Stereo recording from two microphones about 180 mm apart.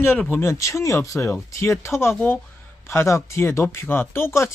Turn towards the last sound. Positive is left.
turn(degrees=15)  # may be behind; listen again after turning